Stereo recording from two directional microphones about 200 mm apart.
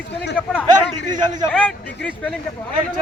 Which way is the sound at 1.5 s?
5° left (ahead or behind).